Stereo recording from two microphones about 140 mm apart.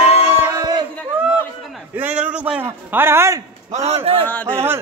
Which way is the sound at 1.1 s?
5° right (ahead or behind).